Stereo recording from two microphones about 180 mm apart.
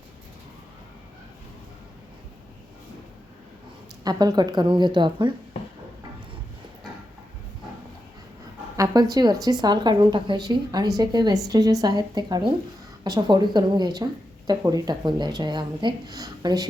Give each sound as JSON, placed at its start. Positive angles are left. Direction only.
{"t": 4.0, "sound": "speech", "side_deg": -20}
{"t": 8.7, "sound": "speech", "side_deg": -20}